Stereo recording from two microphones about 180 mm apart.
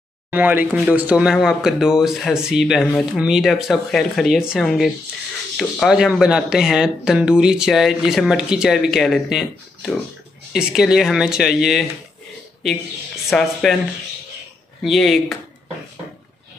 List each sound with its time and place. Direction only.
0.3 s speech: 10° right (ahead or behind)
13.3 s speech: centre (ahead or behind)
14.8 s speech: centre (ahead or behind)